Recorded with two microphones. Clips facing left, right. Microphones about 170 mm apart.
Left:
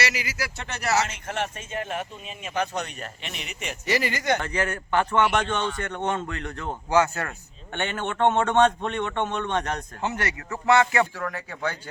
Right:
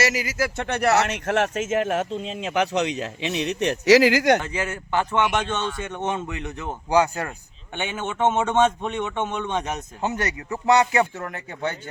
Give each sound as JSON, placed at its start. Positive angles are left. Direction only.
{"t": 0.0, "sound": "speech", "side_deg": -45}
{"t": 4.4, "sound": "speech", "side_deg": -15}